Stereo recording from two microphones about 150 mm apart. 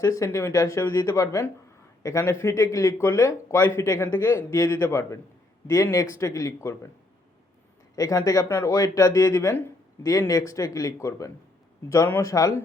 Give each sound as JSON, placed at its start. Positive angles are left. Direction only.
{"t": 0.0, "sound": "speech", "side_deg": 20}
{"t": 7.9, "sound": "speech", "side_deg": 25}